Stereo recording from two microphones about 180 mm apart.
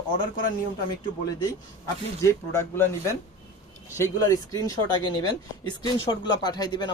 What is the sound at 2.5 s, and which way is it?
Speech, 15° left (ahead or behind).